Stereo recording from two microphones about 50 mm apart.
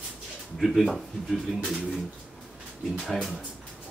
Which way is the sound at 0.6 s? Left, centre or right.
Centre.